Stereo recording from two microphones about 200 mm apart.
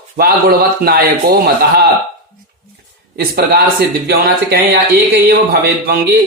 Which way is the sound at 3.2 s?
50° right (ahead or behind).